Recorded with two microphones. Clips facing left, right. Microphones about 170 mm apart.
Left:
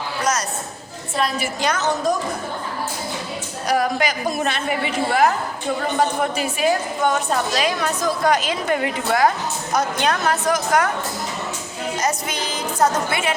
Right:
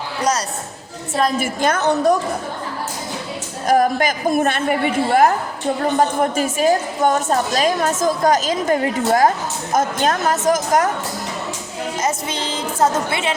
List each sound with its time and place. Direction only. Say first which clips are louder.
1.1 s a woman's voice: right 4 dB; 45° right (ahead or behind)
3.7 s a woman's voice: right 4 dB; 45° right (ahead or behind)
11.9 s a woman's voice: right 1 dB; 25° right (ahead or behind)